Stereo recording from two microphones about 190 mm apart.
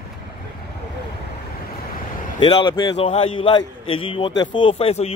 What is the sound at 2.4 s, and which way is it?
A man's voice, 25° left (ahead or behind).